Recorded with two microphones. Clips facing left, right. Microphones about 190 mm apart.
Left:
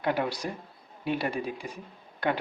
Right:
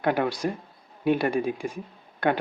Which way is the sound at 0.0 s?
55° right (ahead or behind).